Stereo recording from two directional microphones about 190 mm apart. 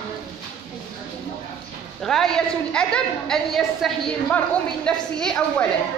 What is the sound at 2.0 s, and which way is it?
A woman's voice, 5° left (ahead or behind).